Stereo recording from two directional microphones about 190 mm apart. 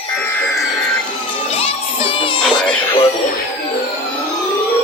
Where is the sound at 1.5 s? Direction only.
30° left (ahead or behind).